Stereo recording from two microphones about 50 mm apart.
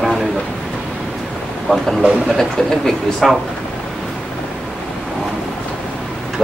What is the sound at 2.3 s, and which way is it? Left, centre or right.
Speech, centre.